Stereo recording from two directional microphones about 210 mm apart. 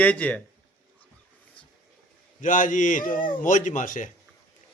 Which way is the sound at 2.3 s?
40° left (ahead or behind).